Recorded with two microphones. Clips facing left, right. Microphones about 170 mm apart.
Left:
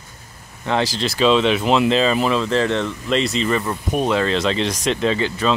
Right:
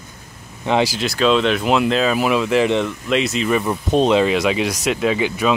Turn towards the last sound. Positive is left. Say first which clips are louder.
# right 1 dB
turn(degrees=-10)  # may be behind; listen again after turning